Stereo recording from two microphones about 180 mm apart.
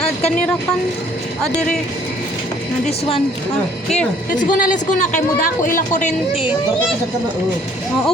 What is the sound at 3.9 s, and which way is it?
Speech, 45° left (ahead or behind).